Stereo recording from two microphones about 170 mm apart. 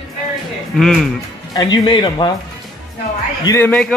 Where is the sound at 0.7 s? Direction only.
Centre (ahead or behind).